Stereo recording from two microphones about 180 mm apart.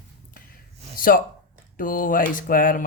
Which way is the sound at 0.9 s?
50° left (ahead or behind).